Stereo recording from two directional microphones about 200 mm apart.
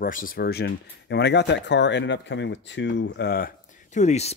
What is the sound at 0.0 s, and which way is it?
Speech, 45° left (ahead or behind).